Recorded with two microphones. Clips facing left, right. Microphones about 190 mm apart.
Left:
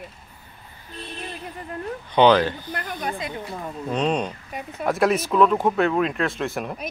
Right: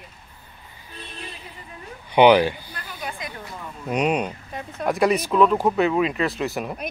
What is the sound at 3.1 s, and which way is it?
Speech, 25° left (ahead or behind).